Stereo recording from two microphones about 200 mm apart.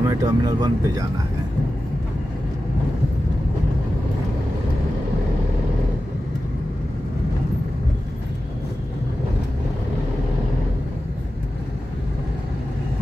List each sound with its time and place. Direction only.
0.0 s speech: 15° right (ahead or behind)